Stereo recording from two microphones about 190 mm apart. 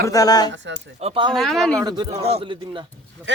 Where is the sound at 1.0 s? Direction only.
25° right (ahead or behind).